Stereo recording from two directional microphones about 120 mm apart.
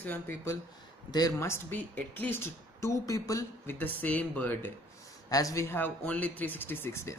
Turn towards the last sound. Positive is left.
turn(degrees=20)  # may be behind; listen again after turning